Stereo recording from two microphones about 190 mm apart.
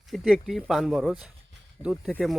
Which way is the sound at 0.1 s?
Centre (ahead or behind).